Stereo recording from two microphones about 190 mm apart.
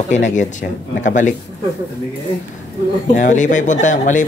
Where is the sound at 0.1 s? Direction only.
40° left (ahead or behind).